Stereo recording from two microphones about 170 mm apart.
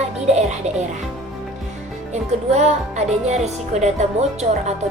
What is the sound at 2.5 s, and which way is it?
Speech, 40° right (ahead or behind).